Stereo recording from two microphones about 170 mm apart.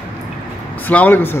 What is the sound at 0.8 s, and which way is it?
Speech, 10° left (ahead or behind).